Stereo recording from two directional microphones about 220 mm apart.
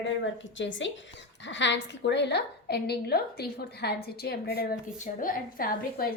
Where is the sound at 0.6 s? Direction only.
55° left (ahead or behind).